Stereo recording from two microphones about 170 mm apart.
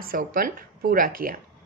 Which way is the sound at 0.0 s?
60° right (ahead or behind).